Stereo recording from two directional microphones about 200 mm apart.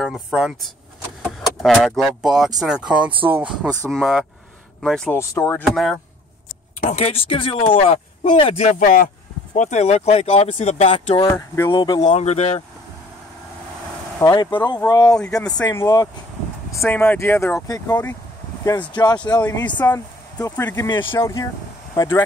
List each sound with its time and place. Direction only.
0.0 s speech: 5° right (ahead or behind)
5.3 s speech: 15° left (ahead or behind)
5.6 s speech: centre (ahead or behind)
6.8 s speech: 35° left (ahead or behind)
11.3 s speech: 15° left (ahead or behind)
12.0 s speech: 35° left (ahead or behind)
14.2 s speech: 20° left (ahead or behind)
19.6 s speech: 10° left (ahead or behind)